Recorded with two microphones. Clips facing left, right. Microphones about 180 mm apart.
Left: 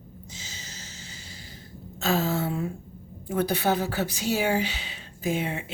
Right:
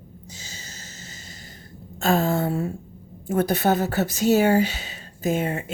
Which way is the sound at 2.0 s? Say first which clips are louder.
Right 4 dB; 50° right (ahead or behind).